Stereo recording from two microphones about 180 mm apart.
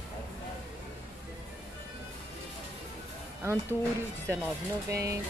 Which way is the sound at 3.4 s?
15° right (ahead or behind).